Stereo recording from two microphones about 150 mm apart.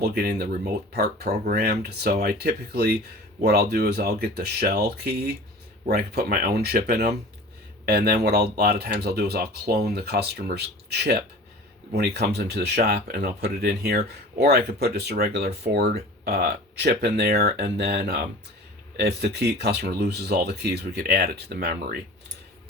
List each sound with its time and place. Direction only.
0.0 s speech: 90° right